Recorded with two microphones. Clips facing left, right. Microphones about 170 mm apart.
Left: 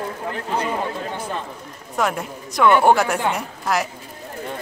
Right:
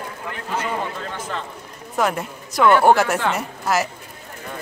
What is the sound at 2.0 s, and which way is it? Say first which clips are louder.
A woman's voice: right 1 dB; centre (ahead or behind).